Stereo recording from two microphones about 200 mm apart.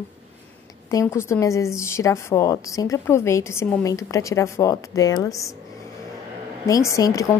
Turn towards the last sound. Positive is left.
turn(degrees=15)  # may be behind; listen again after turning